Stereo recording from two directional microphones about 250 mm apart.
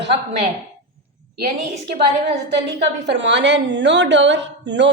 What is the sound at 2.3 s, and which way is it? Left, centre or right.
A woman's voice, right.